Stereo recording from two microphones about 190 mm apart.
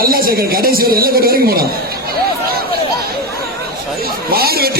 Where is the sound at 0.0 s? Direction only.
50° right (ahead or behind).